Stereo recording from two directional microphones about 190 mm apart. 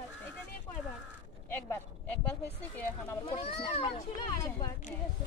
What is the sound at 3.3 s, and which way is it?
Speech, 30° left (ahead or behind).